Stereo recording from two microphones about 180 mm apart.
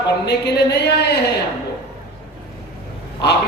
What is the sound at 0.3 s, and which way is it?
Speech, 65° left (ahead or behind).